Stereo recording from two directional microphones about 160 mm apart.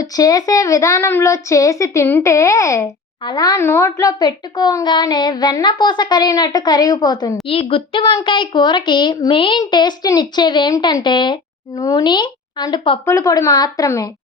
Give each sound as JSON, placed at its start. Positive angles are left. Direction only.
{"t": 0.0, "sound": "speech", "side_deg": 25}
{"t": 13.1, "sound": "speech", "side_deg": 20}